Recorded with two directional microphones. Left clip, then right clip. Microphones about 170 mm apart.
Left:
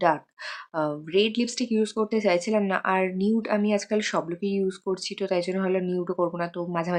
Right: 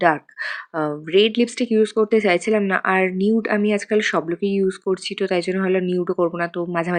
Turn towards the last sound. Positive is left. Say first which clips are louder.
# right 5 dB
turn(degrees=-20)  # may be behind; listen again after turning